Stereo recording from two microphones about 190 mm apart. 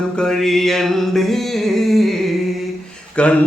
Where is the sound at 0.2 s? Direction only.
Centre (ahead or behind).